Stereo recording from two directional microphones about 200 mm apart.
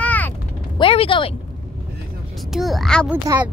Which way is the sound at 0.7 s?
25° left (ahead or behind).